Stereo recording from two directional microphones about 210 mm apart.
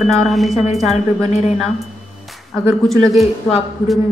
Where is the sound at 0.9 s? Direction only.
30° left (ahead or behind).